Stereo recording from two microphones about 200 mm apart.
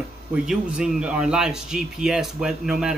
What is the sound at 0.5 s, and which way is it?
Speech, 5° right (ahead or behind).